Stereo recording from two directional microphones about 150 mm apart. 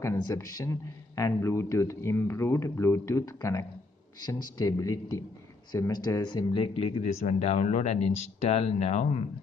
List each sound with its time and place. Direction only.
0.0 s a man's voice: 20° left (ahead or behind); by 9.2 s 45° left (ahead or behind)